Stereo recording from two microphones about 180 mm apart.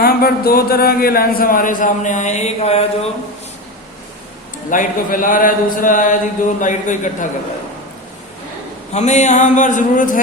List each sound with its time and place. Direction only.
0.0 s speech: 55° left (ahead or behind); by 3.1 s 35° left (ahead or behind)
4.7 s a man's voice: 50° left (ahead or behind)
8.9 s a man's voice: 40° left (ahead or behind)